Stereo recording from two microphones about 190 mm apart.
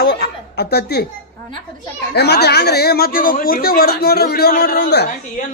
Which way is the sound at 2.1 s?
60° left (ahead or behind).